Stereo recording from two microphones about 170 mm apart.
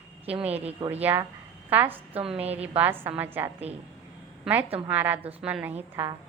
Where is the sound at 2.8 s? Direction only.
10° right (ahead or behind).